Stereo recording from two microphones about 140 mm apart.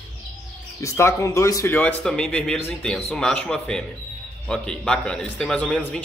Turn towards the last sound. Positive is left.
turn(degrees=5)  # may be behind; listen again after turning